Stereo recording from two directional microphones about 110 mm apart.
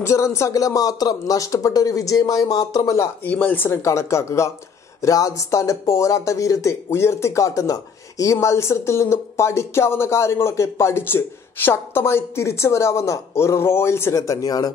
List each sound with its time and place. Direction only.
0.0 s speech: 25° left (ahead or behind)
3.3 s speech: 15° left (ahead or behind); by 14.7 s 35° left (ahead or behind)